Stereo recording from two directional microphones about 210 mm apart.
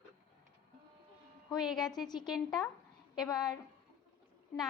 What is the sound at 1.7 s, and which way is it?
Speech, centre (ahead or behind).